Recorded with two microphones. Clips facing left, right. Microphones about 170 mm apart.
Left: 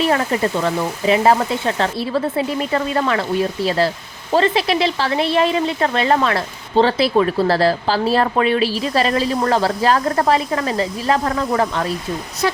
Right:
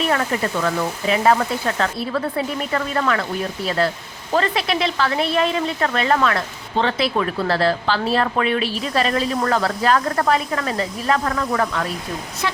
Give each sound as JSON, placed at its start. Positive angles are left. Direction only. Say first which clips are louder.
{"t": 0.1, "sound": "speech", "louder": "left 3 dB", "side_deg": 25}
{"t": 4.3, "sound": "a woman's voice", "louder": "left 4 dB", "side_deg": 30}